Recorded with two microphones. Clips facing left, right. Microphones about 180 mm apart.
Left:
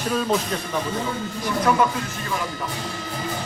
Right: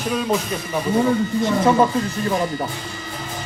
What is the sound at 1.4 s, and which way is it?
Speech, 25° right (ahead or behind).